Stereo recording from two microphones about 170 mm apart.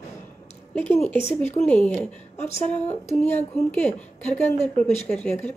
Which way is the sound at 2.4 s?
40° left (ahead or behind).